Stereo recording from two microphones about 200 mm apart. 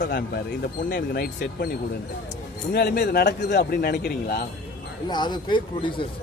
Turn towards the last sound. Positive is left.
turn(degrees=25)  # may be behind; listen again after turning